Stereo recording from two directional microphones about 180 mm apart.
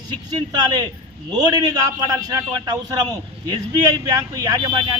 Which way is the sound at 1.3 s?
20° right (ahead or behind).